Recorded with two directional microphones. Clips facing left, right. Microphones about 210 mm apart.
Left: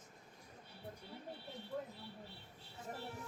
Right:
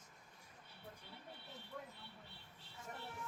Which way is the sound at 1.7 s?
30° left (ahead or behind).